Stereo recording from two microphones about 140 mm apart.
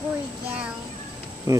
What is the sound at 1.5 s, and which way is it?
Speech, 20° right (ahead or behind).